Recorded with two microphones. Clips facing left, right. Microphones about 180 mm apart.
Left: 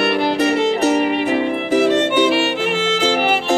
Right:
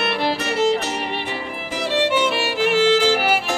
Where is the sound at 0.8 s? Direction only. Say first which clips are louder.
Left 10 dB; 50° left (ahead or behind).